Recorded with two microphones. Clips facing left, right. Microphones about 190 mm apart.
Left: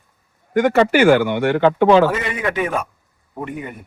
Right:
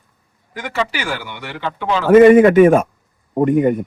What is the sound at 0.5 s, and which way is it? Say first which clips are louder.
A man's voice: left 9 dB; 55° left (ahead or behind).